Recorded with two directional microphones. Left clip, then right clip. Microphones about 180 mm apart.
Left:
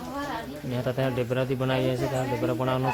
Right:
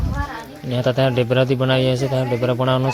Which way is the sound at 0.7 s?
40° right (ahead or behind).